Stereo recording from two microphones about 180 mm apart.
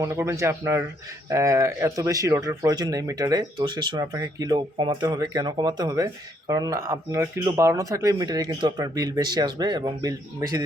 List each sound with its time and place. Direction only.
0.0 s speech: 15° right (ahead or behind)